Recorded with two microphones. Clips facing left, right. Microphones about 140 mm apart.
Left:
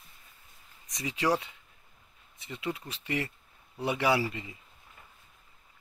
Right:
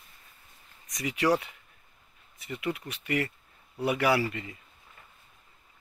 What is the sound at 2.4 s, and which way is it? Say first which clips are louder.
Speech: right 3 dB; 25° left (ahead or behind).